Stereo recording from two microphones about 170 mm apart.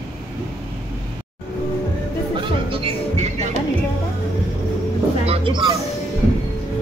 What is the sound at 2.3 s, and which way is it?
Music, 35° right (ahead or behind).